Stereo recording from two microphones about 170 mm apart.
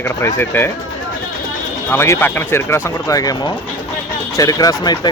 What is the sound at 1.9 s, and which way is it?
Speech, 15° left (ahead or behind).